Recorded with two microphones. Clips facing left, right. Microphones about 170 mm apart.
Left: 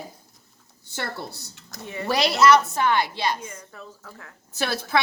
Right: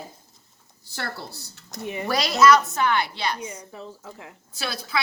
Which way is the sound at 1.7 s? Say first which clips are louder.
Right 3 dB; 15° right (ahead or behind).